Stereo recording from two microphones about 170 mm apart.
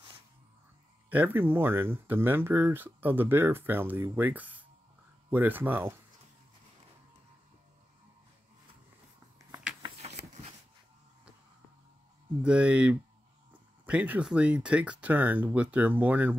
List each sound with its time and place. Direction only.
1.1 s speech: 10° right (ahead or behind)
9.8 s a sound: 40° right (ahead or behind)
12.4 s speech: 5° right (ahead or behind)